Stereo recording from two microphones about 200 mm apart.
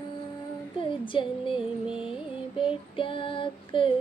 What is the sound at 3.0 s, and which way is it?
Child singing, 25° left (ahead or behind).